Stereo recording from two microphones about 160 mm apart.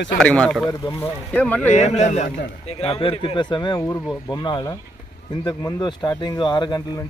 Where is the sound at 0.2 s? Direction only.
5° left (ahead or behind).